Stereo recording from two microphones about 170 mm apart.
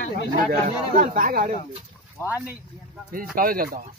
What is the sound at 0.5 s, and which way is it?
Speech, 50° right (ahead or behind).